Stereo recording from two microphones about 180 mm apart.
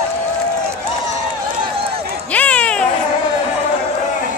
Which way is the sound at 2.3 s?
5° left (ahead or behind).